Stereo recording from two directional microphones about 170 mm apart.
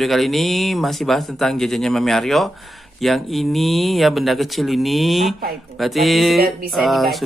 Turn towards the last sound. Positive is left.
turn(degrees=0)  # may be behind; listen again after turning